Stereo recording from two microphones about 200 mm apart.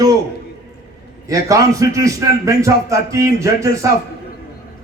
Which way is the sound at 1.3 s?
15° right (ahead or behind).